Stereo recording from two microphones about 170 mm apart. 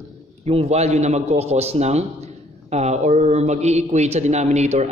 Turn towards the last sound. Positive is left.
turn(degrees=-40)  # may be behind; listen again after turning